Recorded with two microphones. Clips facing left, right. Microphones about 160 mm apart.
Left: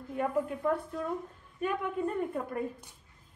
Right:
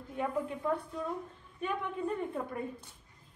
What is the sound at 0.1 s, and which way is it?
Speech, centre (ahead or behind).